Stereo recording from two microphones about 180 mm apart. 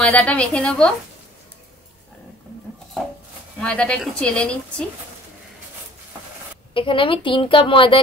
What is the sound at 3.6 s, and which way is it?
A woman's voice, 5° left (ahead or behind).